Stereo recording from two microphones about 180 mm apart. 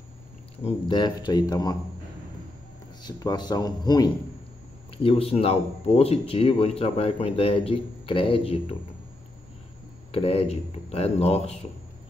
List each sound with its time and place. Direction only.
0.7 s speech: 25° left (ahead or behind)
3.0 s speech: 20° left (ahead or behind)
10.1 s speech: 30° left (ahead or behind)